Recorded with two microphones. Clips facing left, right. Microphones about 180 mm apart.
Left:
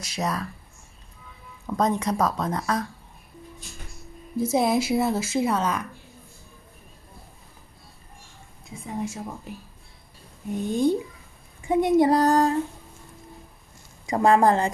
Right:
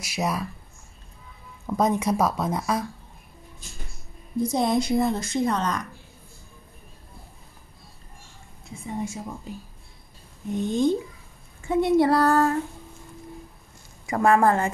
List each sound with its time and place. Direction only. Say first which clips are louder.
0.0 s speech: right 1 dB; 10° right (ahead or behind)
1.7 s speech: right 1 dB; 10° right (ahead or behind)
4.4 s speech: left 1 dB; 5° left (ahead or behind)
8.8 s speech: even; centre (ahead or behind)
10.7 s a sound: left 1 dB; 10° left (ahead or behind)
14.2 s a woman's voice: left 1 dB; 30° left (ahead or behind)